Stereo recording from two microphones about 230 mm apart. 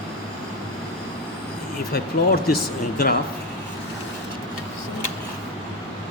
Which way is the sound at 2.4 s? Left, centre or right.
Left.